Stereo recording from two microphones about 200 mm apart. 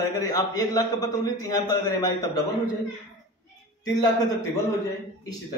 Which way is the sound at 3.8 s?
20° left (ahead or behind).